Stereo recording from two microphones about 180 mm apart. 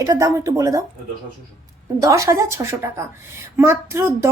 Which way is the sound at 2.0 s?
15° right (ahead or behind).